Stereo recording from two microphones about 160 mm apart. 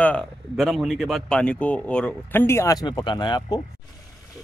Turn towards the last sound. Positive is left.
turn(degrees=25)  # may be behind; listen again after turning